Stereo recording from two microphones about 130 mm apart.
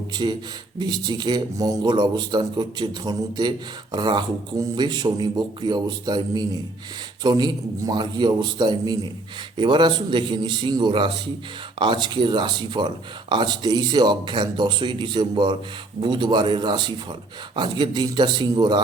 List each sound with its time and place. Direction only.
0.1 s speech: 35° right (ahead or behind)